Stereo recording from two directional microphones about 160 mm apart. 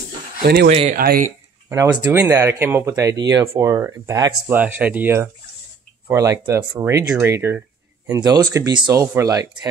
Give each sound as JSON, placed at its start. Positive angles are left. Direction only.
{"t": 0.7, "sound": "speech", "side_deg": -45}
{"t": 0.9, "sound": "speech", "side_deg": -65}
{"t": 1.9, "sound": "speech", "side_deg": -10}